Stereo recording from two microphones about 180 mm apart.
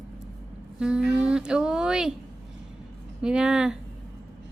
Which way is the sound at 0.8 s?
5° right (ahead or behind).